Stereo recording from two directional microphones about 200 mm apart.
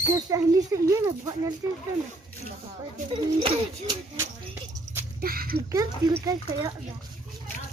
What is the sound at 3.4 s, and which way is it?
Speech, 30° right (ahead or behind).